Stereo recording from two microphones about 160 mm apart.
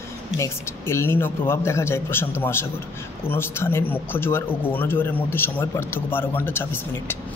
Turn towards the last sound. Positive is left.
turn(degrees=15)  # may be behind; listen again after turning